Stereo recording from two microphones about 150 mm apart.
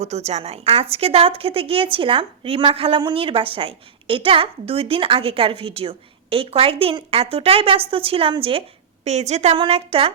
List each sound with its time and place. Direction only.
0.0 s a woman's voice: 45° right (ahead or behind)
9.0 s a woman's voice: 50° right (ahead or behind)